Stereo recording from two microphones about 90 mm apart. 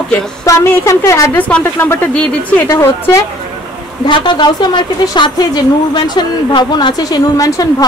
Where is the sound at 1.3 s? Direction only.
20° left (ahead or behind).